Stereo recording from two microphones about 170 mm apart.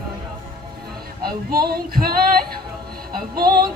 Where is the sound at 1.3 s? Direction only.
65° right (ahead or behind).